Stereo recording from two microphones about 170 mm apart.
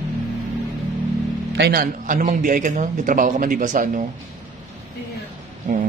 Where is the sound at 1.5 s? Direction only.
65° right (ahead or behind).